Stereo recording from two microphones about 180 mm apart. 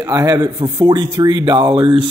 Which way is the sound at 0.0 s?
20° right (ahead or behind).